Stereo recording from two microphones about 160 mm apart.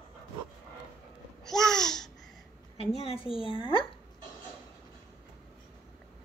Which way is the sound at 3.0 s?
35° left (ahead or behind).